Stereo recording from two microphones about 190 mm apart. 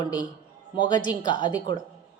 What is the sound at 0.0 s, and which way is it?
A woman's voice, 20° left (ahead or behind).